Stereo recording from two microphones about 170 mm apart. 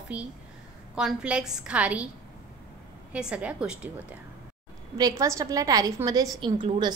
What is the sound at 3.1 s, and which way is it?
Speech, 5° right (ahead or behind).